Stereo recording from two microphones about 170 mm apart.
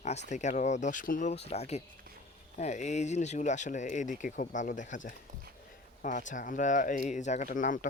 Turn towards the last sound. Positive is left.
turn(degrees=50)  # may be behind; listen again after turning